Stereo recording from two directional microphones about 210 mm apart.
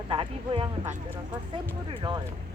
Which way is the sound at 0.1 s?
25° right (ahead or behind).